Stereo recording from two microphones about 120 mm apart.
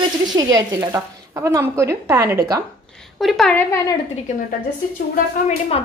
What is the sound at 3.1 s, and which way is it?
Speech, centre (ahead or behind).